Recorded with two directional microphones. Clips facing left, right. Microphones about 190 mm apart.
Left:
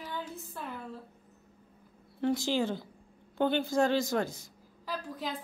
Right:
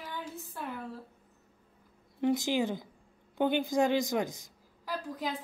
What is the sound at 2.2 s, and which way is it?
A woman's voice, 15° right (ahead or behind).